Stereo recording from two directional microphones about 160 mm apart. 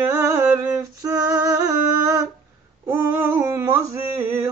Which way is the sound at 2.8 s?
15° right (ahead or behind).